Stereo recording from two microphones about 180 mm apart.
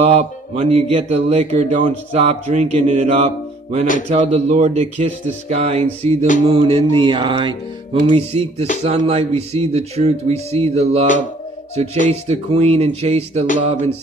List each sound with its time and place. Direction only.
0.0 s speech: 35° right (ahead or behind)
6.4 s music: 30° right (ahead or behind)
8.8 s speech: 35° right (ahead or behind)